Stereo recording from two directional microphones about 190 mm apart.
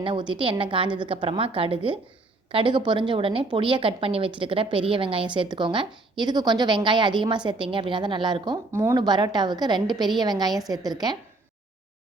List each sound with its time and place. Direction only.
0.0 s a woman's voice: 25° right (ahead or behind)